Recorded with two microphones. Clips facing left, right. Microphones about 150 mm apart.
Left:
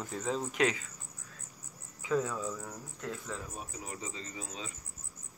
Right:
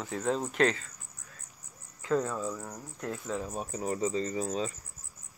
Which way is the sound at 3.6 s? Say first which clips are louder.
Right 11 dB; 40° right (ahead or behind).